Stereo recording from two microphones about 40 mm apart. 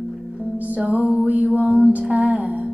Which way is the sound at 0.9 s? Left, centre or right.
Right.